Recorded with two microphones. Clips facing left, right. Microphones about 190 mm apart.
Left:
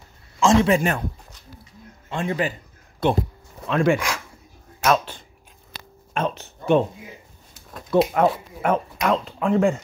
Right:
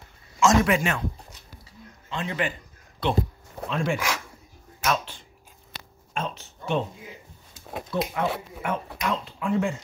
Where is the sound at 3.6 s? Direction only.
65° left (ahead or behind).